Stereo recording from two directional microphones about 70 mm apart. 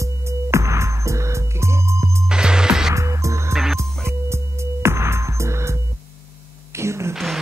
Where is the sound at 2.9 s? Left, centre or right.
Right.